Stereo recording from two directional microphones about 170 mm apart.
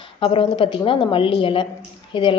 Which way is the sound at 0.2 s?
30° left (ahead or behind).